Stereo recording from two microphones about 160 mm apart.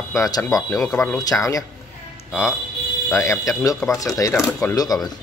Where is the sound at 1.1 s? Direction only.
20° left (ahead or behind).